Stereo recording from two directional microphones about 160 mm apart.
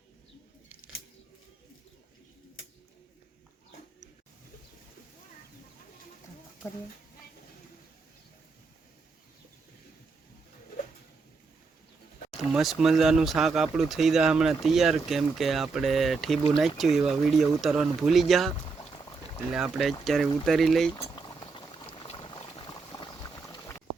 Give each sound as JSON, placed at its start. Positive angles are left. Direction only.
{"t": 12.5, "sound": "speech", "side_deg": 0}
{"t": 19.5, "sound": "speech", "side_deg": 0}
{"t": 20.9, "sound": "boiling", "side_deg": 25}